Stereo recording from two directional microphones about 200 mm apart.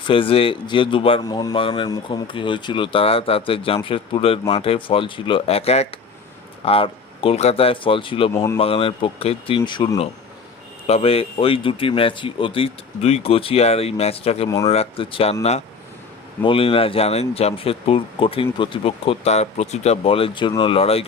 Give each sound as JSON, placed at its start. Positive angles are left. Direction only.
{"t": 0.1, "sound": "a man's voice", "side_deg": 25}
{"t": 8.3, "sound": "speech", "side_deg": 15}
{"t": 8.5, "sound": "a man's voice", "side_deg": 30}
{"t": 16.4, "sound": "a man's voice", "side_deg": 25}